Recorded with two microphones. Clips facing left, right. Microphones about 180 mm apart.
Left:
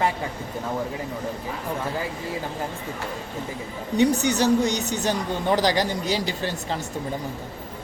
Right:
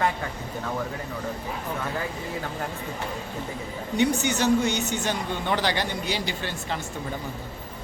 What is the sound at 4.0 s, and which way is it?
Speech, 35° left (ahead or behind).